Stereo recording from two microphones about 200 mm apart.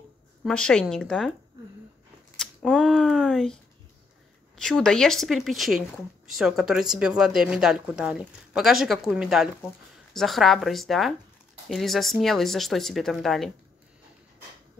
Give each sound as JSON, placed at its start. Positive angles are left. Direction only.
{"t": 0.4, "sound": "speech", "side_deg": 5}
{"t": 2.3, "sound": "a sound", "side_deg": 0}
{"t": 4.6, "sound": "speech", "side_deg": 5}